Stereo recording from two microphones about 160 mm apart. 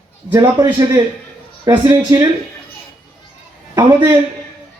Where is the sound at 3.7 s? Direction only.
25° right (ahead or behind).